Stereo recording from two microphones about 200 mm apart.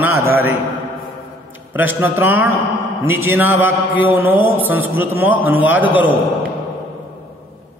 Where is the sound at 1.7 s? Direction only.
10° right (ahead or behind).